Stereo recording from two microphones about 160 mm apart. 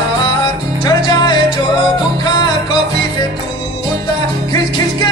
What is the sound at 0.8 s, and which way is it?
Music, 25° left (ahead or behind).